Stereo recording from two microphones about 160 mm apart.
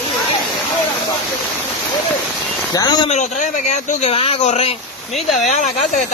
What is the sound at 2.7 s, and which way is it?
Speech, 25° left (ahead or behind).